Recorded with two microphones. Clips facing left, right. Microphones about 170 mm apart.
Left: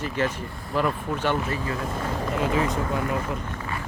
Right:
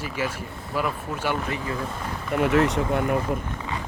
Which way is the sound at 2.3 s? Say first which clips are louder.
Right 5 dB; 70° right (ahead or behind).